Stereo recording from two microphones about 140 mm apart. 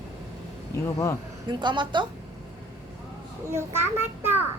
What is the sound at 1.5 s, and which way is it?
Speech, 35° right (ahead or behind).